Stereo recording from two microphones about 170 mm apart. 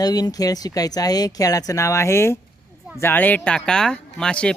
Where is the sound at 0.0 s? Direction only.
20° left (ahead or behind).